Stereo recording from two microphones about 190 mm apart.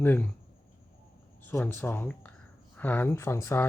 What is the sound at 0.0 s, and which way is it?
Speech, 10° left (ahead or behind).